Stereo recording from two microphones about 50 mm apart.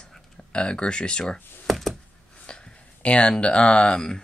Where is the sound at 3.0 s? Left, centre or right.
Left.